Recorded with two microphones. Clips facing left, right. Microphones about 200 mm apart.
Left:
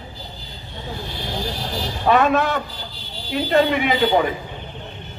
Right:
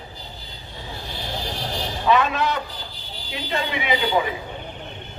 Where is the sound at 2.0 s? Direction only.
50° left (ahead or behind).